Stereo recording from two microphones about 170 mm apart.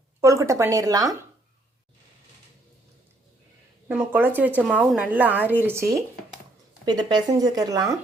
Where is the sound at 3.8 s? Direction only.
10° right (ahead or behind).